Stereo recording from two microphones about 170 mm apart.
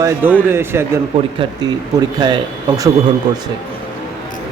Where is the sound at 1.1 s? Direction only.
30° right (ahead or behind).